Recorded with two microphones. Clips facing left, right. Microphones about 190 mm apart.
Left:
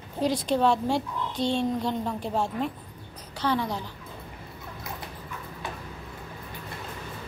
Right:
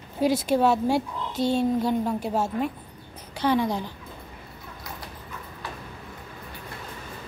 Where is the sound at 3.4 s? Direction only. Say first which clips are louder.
Right 4 dB; 15° right (ahead or behind).